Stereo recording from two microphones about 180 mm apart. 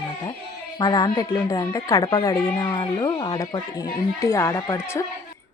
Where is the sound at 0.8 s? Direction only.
20° left (ahead or behind).